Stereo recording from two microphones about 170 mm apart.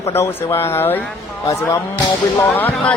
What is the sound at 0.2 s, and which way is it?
Speech, 15° left (ahead or behind).